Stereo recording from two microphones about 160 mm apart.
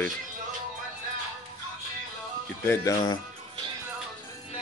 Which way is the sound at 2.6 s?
25° left (ahead or behind).